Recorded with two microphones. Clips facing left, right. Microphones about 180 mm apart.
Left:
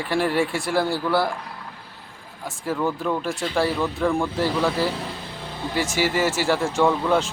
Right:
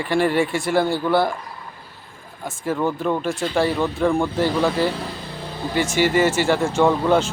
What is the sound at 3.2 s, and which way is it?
Speech, centre (ahead or behind).